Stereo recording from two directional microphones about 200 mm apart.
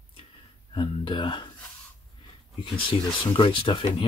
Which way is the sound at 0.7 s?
25° left (ahead or behind).